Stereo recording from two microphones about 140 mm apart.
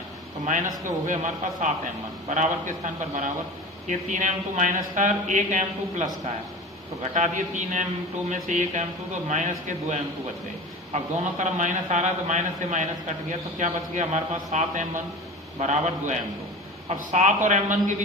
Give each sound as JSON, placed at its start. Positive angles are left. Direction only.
{"t": 1.0, "sound": "speech", "side_deg": -60}